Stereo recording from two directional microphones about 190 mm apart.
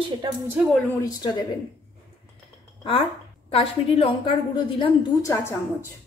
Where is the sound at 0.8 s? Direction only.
20° left (ahead or behind).